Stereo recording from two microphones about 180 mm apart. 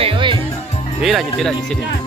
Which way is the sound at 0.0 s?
30° right (ahead or behind).